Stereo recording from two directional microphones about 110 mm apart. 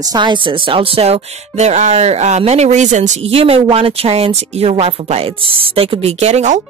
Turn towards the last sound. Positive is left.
turn(degrees=-85)